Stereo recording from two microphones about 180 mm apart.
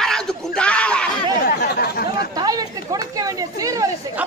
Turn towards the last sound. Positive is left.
turn(degrees=-20)  # may be behind; listen again after turning